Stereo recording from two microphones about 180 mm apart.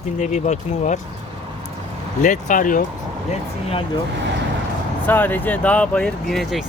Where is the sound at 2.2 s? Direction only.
45° left (ahead or behind).